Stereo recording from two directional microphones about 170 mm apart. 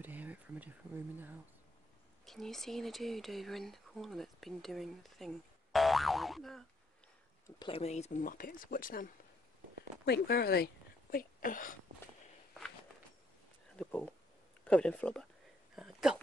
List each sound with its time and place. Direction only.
0.0 s a sound: 10° right (ahead or behind)
2.2 s speech: centre (ahead or behind)
7.4 s speech: 25° left (ahead or behind); by 9.1 s 55° left (ahead or behind)
10.0 s speech: 70° left (ahead or behind)
13.7 s speech: 5° left (ahead or behind)
15.7 s a sound: 5° right (ahead or behind)